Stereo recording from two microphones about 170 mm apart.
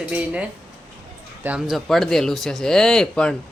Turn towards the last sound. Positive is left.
turn(degrees=5)  # may be behind; listen again after turning